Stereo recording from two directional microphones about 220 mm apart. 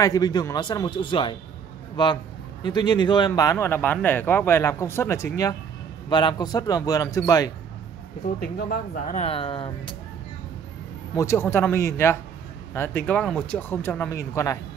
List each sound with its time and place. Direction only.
0.0 s speech: 15° left (ahead or behind)
2.6 s speech: 20° left (ahead or behind)
8.4 s speech: 45° left (ahead or behind); by 9.9 s 25° left (ahead or behind)
11.1 s speech: 10° left (ahead or behind)